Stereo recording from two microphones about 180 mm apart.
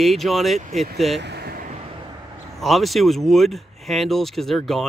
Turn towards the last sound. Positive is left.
turn(degrees=0)  # may be behind; listen again after turning